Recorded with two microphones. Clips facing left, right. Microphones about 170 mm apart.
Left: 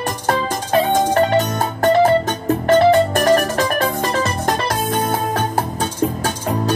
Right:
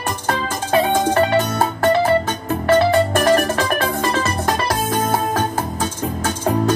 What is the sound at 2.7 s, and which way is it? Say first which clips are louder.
Music: left 2 dB; 40° left (ahead or behind).